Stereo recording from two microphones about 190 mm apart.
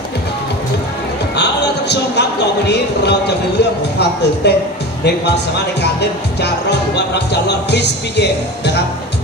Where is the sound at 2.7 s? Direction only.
60° left (ahead or behind).